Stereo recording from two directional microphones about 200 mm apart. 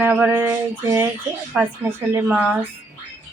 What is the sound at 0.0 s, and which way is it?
A woman's voice, 10° right (ahead or behind).